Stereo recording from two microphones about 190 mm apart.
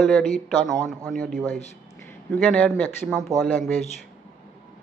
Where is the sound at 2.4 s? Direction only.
5° left (ahead or behind).